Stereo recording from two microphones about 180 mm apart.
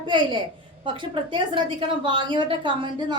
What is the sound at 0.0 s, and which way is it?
A woman's voice, 25° right (ahead or behind).